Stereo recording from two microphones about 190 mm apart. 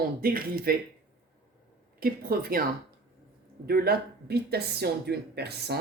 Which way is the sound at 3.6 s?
55° right (ahead or behind).